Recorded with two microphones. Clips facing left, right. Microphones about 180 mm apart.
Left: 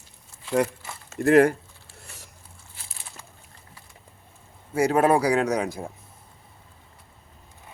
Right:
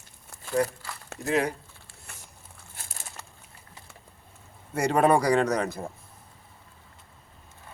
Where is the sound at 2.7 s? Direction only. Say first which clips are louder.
Right 3 dB; 45° right (ahead or behind).